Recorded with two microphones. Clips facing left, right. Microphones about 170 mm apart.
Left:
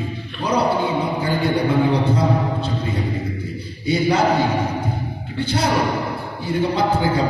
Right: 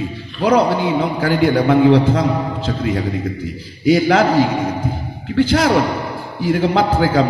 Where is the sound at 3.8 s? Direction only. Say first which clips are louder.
Right 5 dB; 90° right.